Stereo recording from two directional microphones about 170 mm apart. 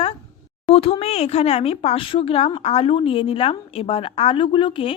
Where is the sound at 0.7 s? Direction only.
35° left (ahead or behind).